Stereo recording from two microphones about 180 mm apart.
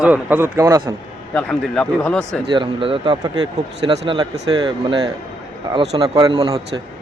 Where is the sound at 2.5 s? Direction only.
30° right (ahead or behind).